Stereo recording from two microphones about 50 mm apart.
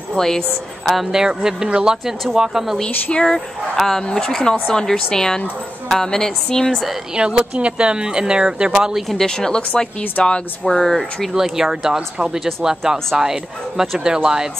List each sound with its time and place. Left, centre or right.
0.2 s speech: centre
1.1 s speech: centre
3.1 s speech: centre
7.2 s speech: centre
9.2 s speech: centre
10.7 s speech: centre
11.3 s speech: centre